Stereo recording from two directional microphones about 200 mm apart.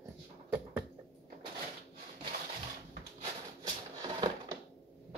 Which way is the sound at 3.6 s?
20° right (ahead or behind).